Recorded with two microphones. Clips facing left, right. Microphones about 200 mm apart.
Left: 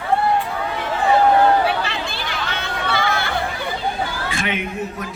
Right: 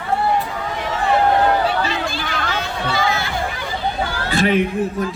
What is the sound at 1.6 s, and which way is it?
Chatter, 60° left (ahead or behind).